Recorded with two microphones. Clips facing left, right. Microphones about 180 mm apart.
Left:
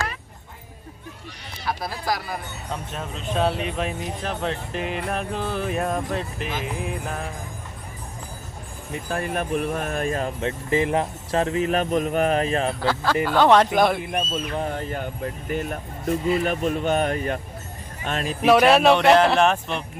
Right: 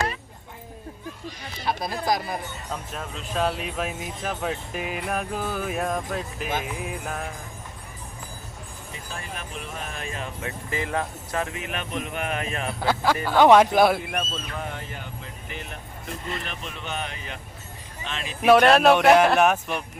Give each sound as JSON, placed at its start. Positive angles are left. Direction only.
{"t": 1.6, "sound": "speech", "side_deg": -20}
{"t": 2.9, "sound": "speech", "side_deg": 0}
{"t": 9.0, "sound": "speech", "side_deg": 55}
{"t": 10.7, "sound": "speech", "side_deg": 20}
{"t": 12.8, "sound": "speech", "side_deg": -15}
{"t": 14.5, "sound": "speech", "side_deg": 35}
{"t": 18.4, "sound": "speech", "side_deg": 5}